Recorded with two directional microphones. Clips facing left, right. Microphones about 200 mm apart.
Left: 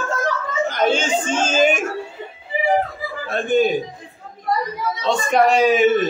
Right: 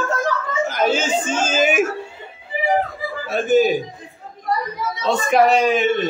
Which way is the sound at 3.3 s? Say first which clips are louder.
Right 2 dB; 5° right (ahead or behind).